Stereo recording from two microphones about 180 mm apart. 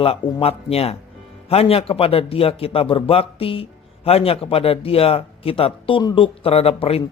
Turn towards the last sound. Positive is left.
turn(degrees=35)  # may be behind; listen again after turning